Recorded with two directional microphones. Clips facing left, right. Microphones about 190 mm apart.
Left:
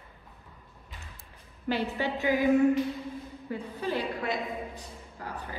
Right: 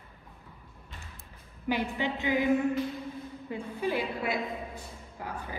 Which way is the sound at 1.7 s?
15° right (ahead or behind).